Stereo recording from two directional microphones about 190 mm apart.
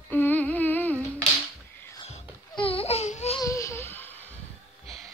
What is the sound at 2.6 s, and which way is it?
Baby cry, 30° left (ahead or behind).